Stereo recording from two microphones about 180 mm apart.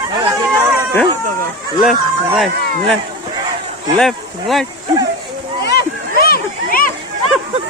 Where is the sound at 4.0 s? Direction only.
Centre (ahead or behind).